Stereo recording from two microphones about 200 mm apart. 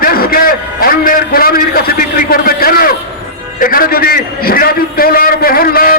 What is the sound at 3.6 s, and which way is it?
A man's voice, 45° left (ahead or behind).